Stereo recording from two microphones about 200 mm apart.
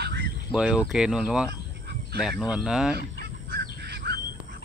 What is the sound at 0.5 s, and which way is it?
Speech, 5° right (ahead or behind).